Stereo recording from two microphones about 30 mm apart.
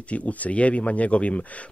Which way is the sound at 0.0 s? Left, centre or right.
Left.